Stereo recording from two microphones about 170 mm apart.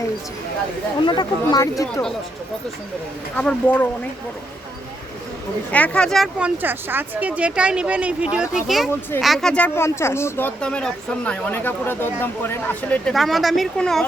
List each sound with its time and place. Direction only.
1.0 s speech: 25° left (ahead or behind)
3.3 s speech: 10° left (ahead or behind)
5.7 s speech: 5° left (ahead or behind)
6.6 s speech: 10° right (ahead or behind)
8.9 s speech: 10° left (ahead or behind)
9.2 s speech: centre (ahead or behind)